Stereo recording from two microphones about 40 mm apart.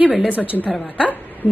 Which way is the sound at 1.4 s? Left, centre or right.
Left.